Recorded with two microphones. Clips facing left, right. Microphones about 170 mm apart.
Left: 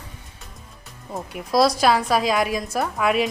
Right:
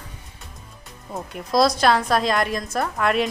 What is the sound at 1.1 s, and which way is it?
Speech, centre (ahead or behind).